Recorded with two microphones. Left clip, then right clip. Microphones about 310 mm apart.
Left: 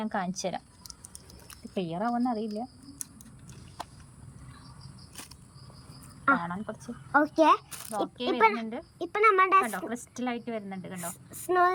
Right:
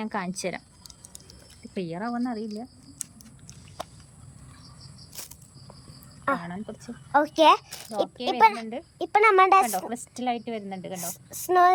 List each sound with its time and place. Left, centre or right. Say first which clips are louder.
0.0 s a sound: right 1 dB; centre
6.2 s speech: left 2 dB; centre
6.7 s speech: right 2 dB; centre
8.0 s speech: right 4 dB; right
8.7 s a woman's voice: right 9 dB; centre